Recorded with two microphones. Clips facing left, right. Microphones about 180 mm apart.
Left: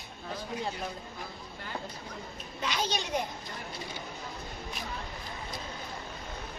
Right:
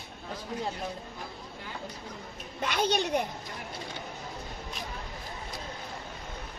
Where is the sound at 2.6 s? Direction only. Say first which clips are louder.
Right 5 dB; 55° right (ahead or behind).